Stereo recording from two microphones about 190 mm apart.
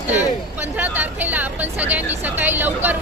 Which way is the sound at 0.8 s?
10° right (ahead or behind).